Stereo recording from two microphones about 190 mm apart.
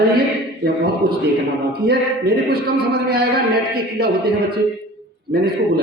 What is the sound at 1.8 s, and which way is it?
Speech, 55° right (ahead or behind).